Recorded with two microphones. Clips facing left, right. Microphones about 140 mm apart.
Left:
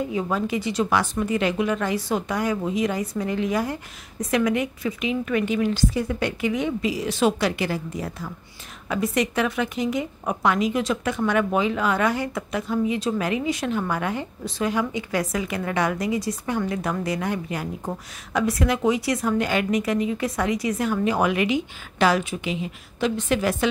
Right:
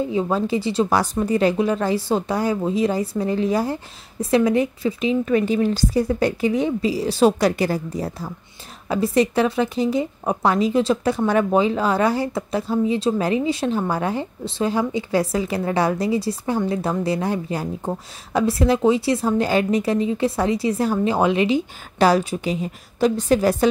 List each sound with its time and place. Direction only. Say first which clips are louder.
0.0 s a woman's voice: right 4 dB; 30° right (ahead or behind)